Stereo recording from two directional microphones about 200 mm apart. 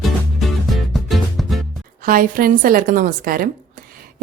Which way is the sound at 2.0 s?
45° right (ahead or behind).